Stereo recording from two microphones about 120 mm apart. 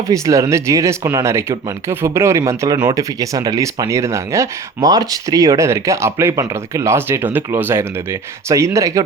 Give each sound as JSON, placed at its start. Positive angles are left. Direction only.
{"t": 0.1, "sound": "speech", "side_deg": -25}